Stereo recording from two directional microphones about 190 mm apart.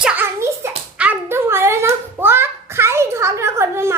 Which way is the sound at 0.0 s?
10° right (ahead or behind).